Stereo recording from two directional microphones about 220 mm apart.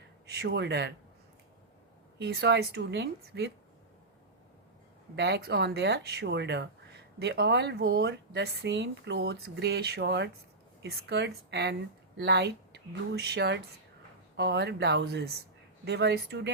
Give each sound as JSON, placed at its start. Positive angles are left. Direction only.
{"t": 0.3, "sound": "speech", "side_deg": -50}
{"t": 2.1, "sound": "speech", "side_deg": -50}
{"t": 5.1, "sound": "speech", "side_deg": -50}